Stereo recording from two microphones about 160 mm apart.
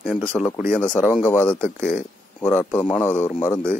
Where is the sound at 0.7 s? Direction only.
10° left (ahead or behind).